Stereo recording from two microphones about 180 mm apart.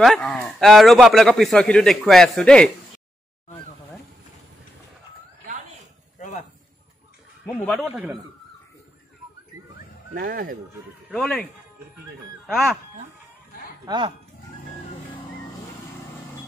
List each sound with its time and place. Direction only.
0.0 s a man's voice: centre (ahead or behind)
6.1 s a sound: 45° left (ahead or behind)
10.1 s speech: 55° right (ahead or behind)
11.1 s a man's voice: 5° left (ahead or behind)
12.4 s speech: centre (ahead or behind)
13.8 s speech: 25° right (ahead or behind)